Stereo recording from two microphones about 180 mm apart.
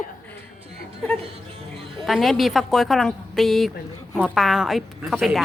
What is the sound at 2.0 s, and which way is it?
A woman's voice, centre (ahead or behind).